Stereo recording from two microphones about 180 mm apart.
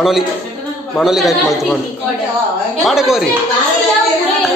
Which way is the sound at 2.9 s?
Centre (ahead or behind).